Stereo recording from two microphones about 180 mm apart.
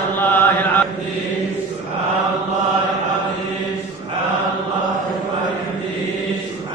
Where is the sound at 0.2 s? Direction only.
10° left (ahead or behind).